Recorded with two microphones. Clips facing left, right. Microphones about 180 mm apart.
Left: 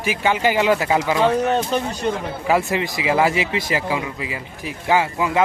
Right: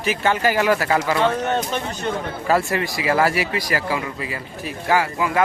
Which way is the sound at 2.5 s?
15° left (ahead or behind).